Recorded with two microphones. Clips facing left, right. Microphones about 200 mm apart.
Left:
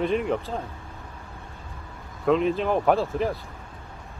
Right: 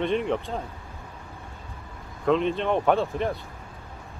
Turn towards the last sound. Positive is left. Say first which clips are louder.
# left 1 dB
turn(degrees=0)  # may be behind; listen again after turning